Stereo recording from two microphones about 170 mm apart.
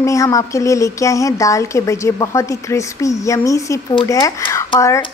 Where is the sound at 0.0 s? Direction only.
20° left (ahead or behind).